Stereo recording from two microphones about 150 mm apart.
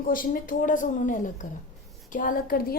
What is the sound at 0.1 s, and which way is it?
A woman's voice, 70° left (ahead or behind).